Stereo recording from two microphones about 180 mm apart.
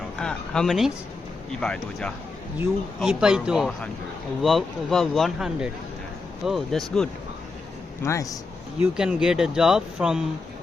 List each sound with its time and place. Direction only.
0.2 s a sound: 5° left (ahead or behind)
1.6 s speech: 5° left (ahead or behind)
8.0 s a man's voice: 15° left (ahead or behind)
8.8 s speech: 5° right (ahead or behind)